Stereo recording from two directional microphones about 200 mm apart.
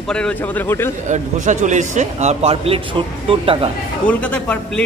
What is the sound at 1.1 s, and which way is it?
A man's voice, 35° right (ahead or behind).